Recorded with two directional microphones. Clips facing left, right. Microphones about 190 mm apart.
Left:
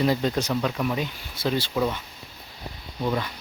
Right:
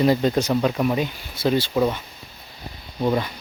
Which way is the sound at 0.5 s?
30° right (ahead or behind).